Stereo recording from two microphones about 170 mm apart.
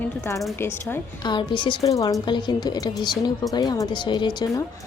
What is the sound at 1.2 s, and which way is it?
A woman's voice, 25° left (ahead or behind).